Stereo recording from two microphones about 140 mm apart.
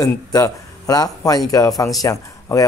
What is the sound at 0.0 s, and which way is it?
A man's voice, 25° left (ahead or behind).